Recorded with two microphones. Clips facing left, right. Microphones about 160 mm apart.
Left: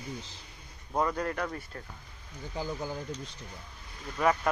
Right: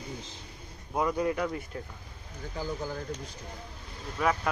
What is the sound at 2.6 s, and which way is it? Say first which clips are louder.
Speech: even; 20° left (ahead or behind).